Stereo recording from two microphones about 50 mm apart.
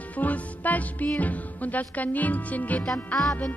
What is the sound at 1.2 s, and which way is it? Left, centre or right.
Speech, left.